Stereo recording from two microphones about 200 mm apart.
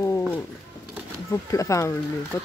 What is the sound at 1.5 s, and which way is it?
Speech, 15° left (ahead or behind).